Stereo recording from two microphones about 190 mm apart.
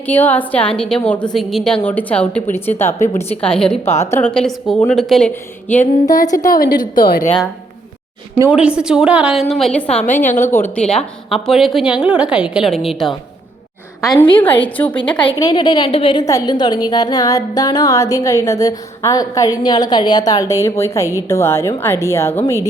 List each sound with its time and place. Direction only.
0.0 s a woman's voice: 10° left (ahead or behind)
6.5 s a woman's voice: 50° left (ahead or behind)
8.4 s a woman's voice: 5° right (ahead or behind)
14.0 s a woman's voice: 20° left (ahead or behind)
15.2 s a woman's voice: 20° left (ahead or behind)